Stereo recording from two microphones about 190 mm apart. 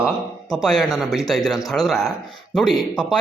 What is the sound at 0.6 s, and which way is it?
Speech, centre (ahead or behind).